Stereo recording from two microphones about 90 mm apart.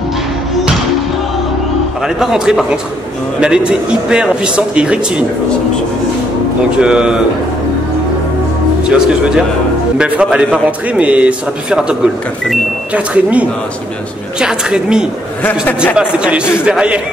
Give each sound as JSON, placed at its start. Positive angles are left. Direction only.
{"t": 2.0, "sound": "a man's voice", "side_deg": -5}
{"t": 6.8, "sound": "a man's voice", "side_deg": -10}
{"t": 8.8, "sound": "a man's voice", "side_deg": -10}